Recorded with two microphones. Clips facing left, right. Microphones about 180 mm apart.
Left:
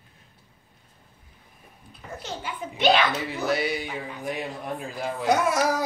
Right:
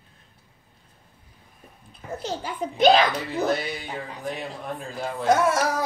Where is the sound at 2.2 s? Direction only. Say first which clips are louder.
Right 4 dB; 40° right (ahead or behind).